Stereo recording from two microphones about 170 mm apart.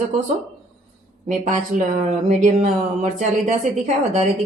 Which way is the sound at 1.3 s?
45° right (ahead or behind).